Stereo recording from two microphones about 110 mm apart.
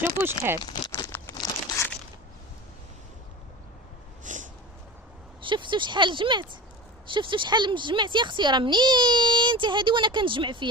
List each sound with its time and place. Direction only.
0.0 s speech: 20° right (ahead or behind)
1.0 s crumpling: 30° left (ahead or behind)
5.4 s speech: 50° right (ahead or behind)